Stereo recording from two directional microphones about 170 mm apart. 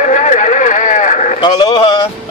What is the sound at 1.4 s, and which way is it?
Sheep, 30° left (ahead or behind).